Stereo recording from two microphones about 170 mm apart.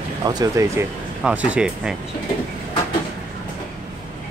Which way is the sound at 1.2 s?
5° right (ahead or behind).